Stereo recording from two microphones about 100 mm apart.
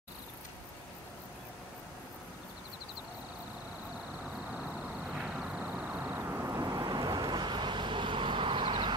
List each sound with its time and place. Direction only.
5.1 s vehicle: 10° right (ahead or behind); by 8.9 s 55° right (ahead or behind)